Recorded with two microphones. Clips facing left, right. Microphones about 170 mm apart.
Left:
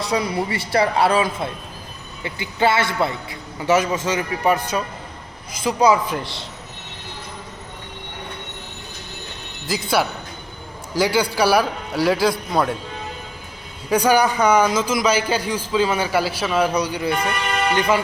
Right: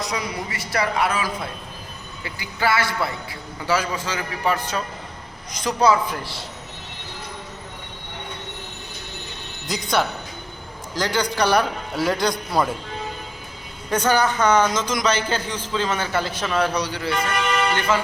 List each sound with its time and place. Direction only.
0.0 s a man's voice: 30° left (ahead or behind)
9.6 s a man's voice: 5° left (ahead or behind)
13.9 s a man's voice: 10° left (ahead or behind)